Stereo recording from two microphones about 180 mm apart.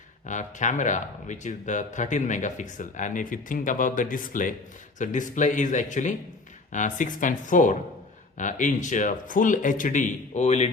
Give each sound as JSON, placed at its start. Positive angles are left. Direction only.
{"t": 0.3, "sound": "speech", "side_deg": 45}